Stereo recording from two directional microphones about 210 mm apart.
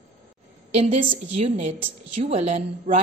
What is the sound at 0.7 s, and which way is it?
A woman's voice, 30° right (ahead or behind).